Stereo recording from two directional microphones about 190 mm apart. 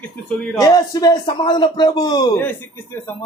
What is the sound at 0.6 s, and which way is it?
Speech, 20° left (ahead or behind).